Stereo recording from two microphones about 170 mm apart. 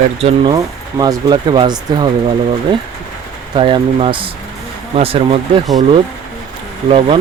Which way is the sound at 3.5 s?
30° right (ahead or behind).